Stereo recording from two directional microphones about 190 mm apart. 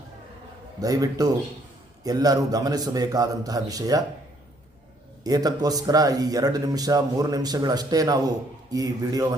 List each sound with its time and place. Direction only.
0.8 s speech: 20° right (ahead or behind)
5.2 s speech: 20° right (ahead or behind)